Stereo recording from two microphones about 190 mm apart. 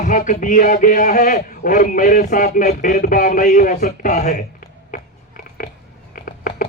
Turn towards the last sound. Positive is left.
turn(degrees=50)  # may be behind; listen again after turning